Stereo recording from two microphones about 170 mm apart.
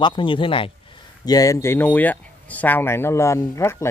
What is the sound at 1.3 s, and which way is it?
Speech, 20° left (ahead or behind).